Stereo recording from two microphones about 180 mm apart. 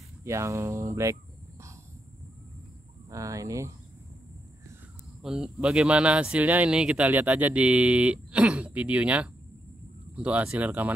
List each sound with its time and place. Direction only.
0.2 s speech: 15° right (ahead or behind)
3.1 s speech: 20° right (ahead or behind)
5.2 s speech: 5° right (ahead or behind)